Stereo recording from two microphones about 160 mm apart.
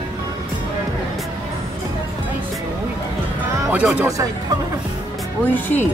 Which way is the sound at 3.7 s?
10° right (ahead or behind).